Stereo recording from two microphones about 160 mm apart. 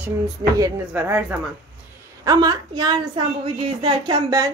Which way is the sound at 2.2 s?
25° right (ahead or behind).